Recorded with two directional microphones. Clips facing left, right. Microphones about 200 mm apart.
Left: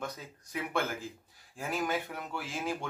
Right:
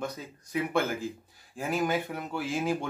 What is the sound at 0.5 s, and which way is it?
Speech, 5° right (ahead or behind).